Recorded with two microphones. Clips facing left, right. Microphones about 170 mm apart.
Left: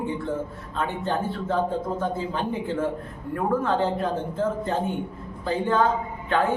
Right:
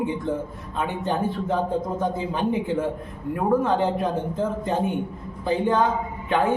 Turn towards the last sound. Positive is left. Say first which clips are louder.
# right 1 dB
turn(degrees=-15)  # may be behind; listen again after turning